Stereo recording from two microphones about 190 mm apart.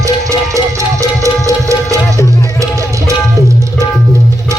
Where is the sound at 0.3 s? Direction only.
15° right (ahead or behind).